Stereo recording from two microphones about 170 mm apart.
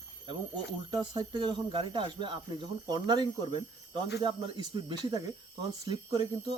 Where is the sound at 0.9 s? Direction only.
25° right (ahead or behind).